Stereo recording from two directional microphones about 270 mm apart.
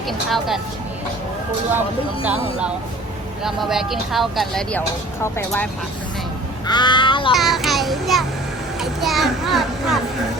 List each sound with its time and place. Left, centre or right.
0.3 s speech: centre
2.2 s speech: centre
5.2 s crow: centre
6.7 s crow: centre
7.3 s a child's voice: centre